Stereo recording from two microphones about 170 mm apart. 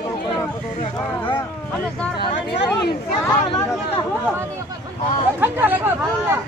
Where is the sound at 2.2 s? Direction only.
75° left (ahead or behind).